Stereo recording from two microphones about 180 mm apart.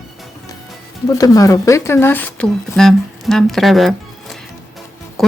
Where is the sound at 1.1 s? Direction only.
20° left (ahead or behind).